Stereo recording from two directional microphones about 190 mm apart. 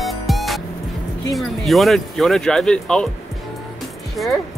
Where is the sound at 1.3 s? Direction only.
Centre (ahead or behind).